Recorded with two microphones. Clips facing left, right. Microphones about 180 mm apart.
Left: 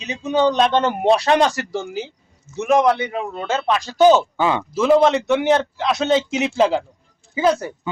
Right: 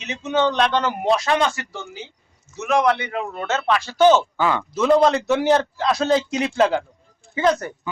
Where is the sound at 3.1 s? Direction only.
15° left (ahead or behind).